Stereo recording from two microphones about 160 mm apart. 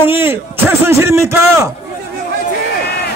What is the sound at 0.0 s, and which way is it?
A man's voice, 15° right (ahead or behind).